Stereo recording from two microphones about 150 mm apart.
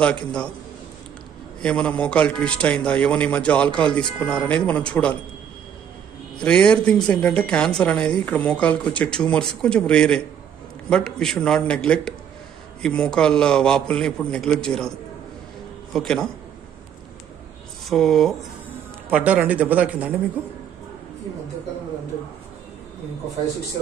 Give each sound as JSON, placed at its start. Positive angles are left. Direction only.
{"t": 0.0, "sound": "a man's voice", "side_deg": 5}
{"t": 1.6, "sound": "a man's voice", "side_deg": 5}
{"t": 6.4, "sound": "a man's voice", "side_deg": 5}
{"t": 17.8, "sound": "a man's voice", "side_deg": 0}